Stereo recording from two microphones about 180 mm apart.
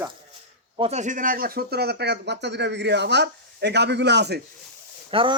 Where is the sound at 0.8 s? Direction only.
35° right (ahead or behind); by 4.4 s 70° right (ahead or behind).